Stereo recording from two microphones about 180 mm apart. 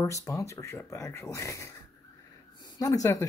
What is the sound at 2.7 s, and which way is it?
Speech, 20° left (ahead or behind).